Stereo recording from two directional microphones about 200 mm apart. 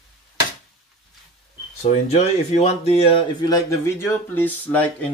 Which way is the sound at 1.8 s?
35° left (ahead or behind).